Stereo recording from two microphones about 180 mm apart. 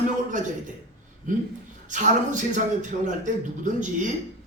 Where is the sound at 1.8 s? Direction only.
45° right (ahead or behind).